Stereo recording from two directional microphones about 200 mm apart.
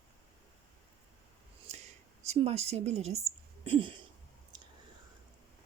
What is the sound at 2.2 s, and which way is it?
Speech, 30° right (ahead or behind).